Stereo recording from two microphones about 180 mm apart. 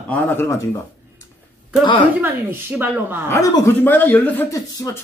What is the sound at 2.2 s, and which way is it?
Speech, 10° right (ahead or behind).